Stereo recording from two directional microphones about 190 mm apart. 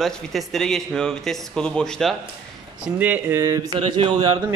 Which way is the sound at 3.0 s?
10° right (ahead or behind).